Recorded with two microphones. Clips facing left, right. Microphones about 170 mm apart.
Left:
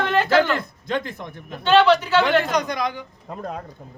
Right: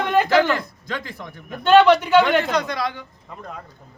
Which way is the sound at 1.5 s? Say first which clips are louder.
Right 2 dB; 10° right (ahead or behind).